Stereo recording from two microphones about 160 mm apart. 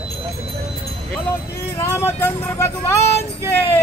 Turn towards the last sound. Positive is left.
turn(degrees=15)  # may be behind; listen again after turning